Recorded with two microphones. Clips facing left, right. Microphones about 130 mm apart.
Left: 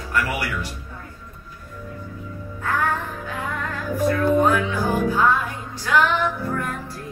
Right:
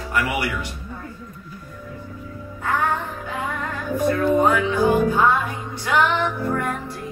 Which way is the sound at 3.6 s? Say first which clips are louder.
Left 1 dB; 15° right (ahead or behind).